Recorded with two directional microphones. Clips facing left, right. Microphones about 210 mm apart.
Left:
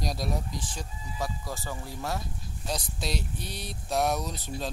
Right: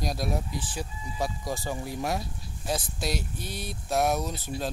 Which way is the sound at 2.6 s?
Centre (ahead or behind).